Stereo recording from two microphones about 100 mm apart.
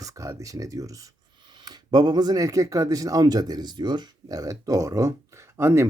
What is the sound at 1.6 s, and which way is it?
Speech, 45° right (ahead or behind).